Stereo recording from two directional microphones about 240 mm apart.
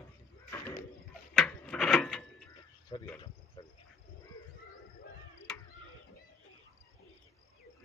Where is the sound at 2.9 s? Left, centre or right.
Left.